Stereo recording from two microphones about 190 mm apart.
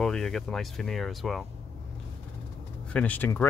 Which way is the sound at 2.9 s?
5° left (ahead or behind).